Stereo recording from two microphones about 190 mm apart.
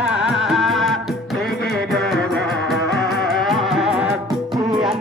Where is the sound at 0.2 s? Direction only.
5° right (ahead or behind).